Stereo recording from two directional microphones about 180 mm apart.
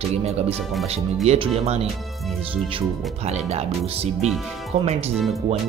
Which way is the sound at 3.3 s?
35° right (ahead or behind).